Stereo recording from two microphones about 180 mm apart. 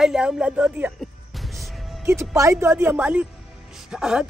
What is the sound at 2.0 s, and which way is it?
A woman's voice, 15° right (ahead or behind).